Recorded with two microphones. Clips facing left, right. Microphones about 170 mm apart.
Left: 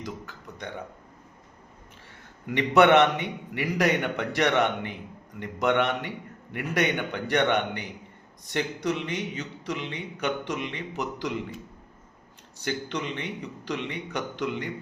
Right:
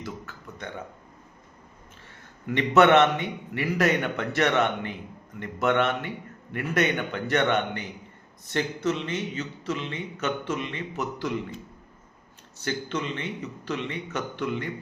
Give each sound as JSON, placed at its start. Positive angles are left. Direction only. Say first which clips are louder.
{"t": 0.0, "sound": "a sound", "louder": "even", "side_deg": 15}
{"t": 2.5, "sound": "a man's voice", "louder": "even", "side_deg": 15}
{"t": 12.6, "sound": "a man's voice", "louder": "right 1 dB", "side_deg": 15}